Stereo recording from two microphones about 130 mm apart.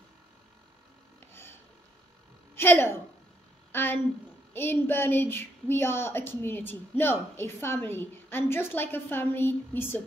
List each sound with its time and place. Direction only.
2.5 s a woman's voice: 20° left (ahead or behind)